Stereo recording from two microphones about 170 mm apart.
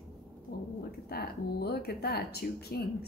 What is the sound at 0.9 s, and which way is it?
Speech, 65° left (ahead or behind).